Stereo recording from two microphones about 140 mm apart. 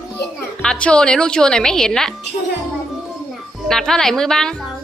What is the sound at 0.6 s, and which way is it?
A woman's voice, 5° left (ahead or behind).